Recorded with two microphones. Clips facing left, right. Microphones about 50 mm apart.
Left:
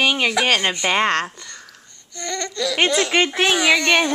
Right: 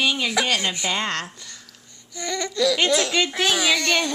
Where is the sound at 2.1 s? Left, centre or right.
Centre.